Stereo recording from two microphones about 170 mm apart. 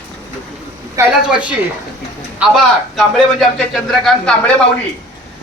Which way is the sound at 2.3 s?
Centre (ahead or behind).